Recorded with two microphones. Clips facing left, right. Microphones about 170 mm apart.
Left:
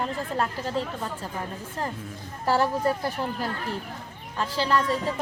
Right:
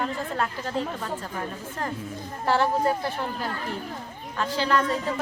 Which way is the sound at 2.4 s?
40° left (ahead or behind).